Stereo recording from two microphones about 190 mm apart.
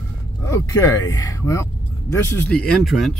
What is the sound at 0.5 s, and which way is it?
Speech, 15° left (ahead or behind).